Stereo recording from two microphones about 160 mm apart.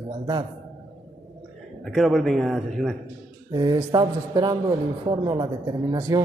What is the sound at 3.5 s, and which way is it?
A man's voice, 25° right (ahead or behind).